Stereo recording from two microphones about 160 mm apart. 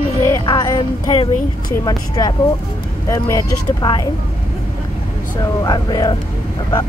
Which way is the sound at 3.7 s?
25° left (ahead or behind).